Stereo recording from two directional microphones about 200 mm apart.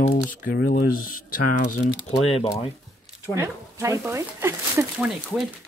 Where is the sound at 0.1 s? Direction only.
45° left (ahead or behind); by 2.7 s 30° left (ahead or behind).